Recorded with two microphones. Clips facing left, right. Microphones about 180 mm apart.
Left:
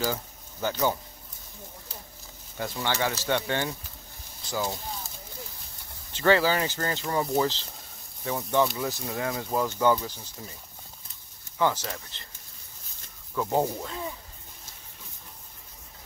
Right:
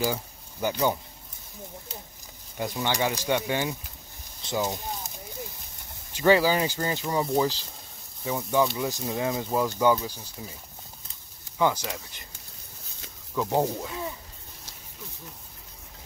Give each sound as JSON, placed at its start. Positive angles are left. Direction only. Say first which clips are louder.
{"t": 0.0, "sound": "speech", "louder": "right 2 dB", "side_deg": -15}
{"t": 2.5, "sound": "speech", "louder": "right 2 dB", "side_deg": -15}
{"t": 6.1, "sound": "speech", "louder": "right 2 dB", "side_deg": -15}
{"t": 11.5, "sound": "speech", "louder": "right 1 dB", "side_deg": -10}
{"t": 13.3, "sound": "speech", "louder": "right 1 dB", "side_deg": -5}